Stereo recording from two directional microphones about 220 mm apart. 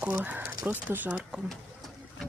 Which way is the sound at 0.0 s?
10° right (ahead or behind).